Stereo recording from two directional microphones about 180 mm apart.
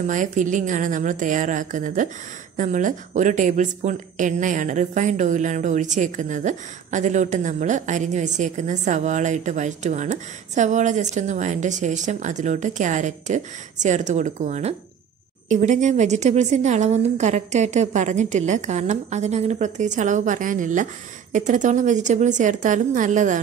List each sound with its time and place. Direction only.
0.0 s a woman's voice: 45° right (ahead or behind)